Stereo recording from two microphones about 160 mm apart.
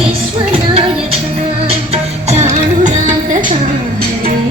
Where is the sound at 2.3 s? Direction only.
45° right (ahead or behind).